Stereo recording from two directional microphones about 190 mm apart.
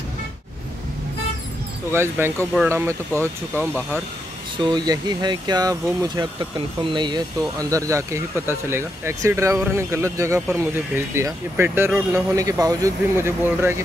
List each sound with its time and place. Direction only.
1.9 s speech: 10° right (ahead or behind)
4.6 s speech: 25° right (ahead or behind)